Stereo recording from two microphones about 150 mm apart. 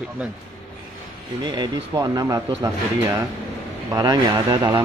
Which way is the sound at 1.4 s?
30° right (ahead or behind).